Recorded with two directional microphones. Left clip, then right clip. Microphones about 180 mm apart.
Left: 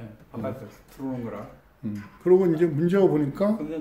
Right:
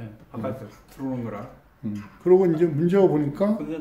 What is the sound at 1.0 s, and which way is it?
Speech, 30° right (ahead or behind).